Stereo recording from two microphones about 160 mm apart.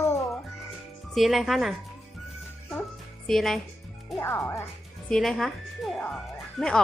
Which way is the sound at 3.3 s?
Centre (ahead or behind).